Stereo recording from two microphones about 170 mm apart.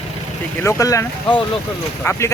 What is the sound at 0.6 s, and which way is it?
Speech, 15° left (ahead or behind).